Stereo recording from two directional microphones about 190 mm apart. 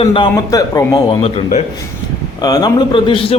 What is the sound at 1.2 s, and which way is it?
Mantra, 30° left (ahead or behind).